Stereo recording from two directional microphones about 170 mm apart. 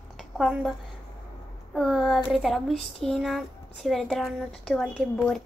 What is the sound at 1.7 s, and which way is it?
A woman's voice, centre (ahead or behind).